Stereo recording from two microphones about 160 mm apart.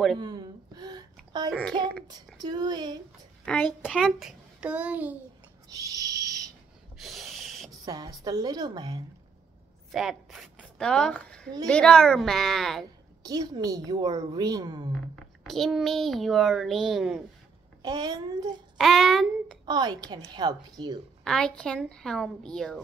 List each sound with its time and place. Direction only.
0.2 s a sound: 25° right (ahead or behind)
2.0 s a woman's voice: 25° right (ahead or behind)
3.4 s a child's voice: 5° left (ahead or behind)
4.6 s child singing: 10° right (ahead or behind)
5.7 s owl: 20° right (ahead or behind)
7.0 s a sound: centre (ahead or behind)
7.8 s a woman's voice: 25° right (ahead or behind)
9.8 s a child's voice: centre (ahead or behind)
13.2 s a woman's voice: 25° right (ahead or behind)
15.1 s a child's voice: centre (ahead or behind)
17.8 s a woman's voice: 25° right (ahead or behind)
18.8 s a child's voice: centre (ahead or behind)
19.6 s a woman's voice: 25° right (ahead or behind)
21.2 s a child's voice: 5° left (ahead or behind)